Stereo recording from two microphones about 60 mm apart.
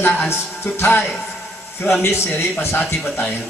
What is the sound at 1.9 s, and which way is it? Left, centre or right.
Speech, left.